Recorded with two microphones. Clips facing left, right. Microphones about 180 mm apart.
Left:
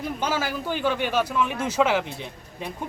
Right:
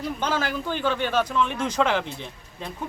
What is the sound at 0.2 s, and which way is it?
A man's voice, 10° left (ahead or behind).